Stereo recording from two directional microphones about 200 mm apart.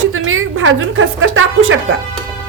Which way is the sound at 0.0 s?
90° right.